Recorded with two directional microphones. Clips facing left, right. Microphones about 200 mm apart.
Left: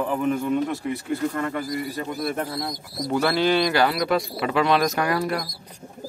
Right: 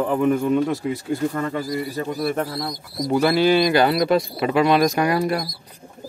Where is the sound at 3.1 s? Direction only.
10° right (ahead or behind).